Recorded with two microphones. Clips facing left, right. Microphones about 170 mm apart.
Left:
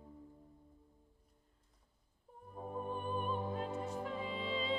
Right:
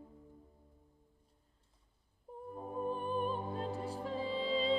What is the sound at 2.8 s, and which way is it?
Music, 35° right (ahead or behind).